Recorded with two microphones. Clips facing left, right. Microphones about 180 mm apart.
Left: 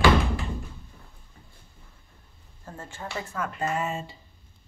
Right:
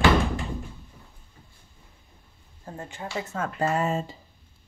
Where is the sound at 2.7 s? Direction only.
15° right (ahead or behind); by 4.1 s 40° right (ahead or behind).